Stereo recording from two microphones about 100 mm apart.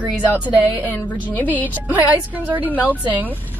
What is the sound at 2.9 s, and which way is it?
Speech, 15° right (ahead or behind).